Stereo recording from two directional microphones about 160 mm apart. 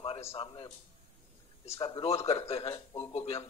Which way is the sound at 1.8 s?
35° left (ahead or behind).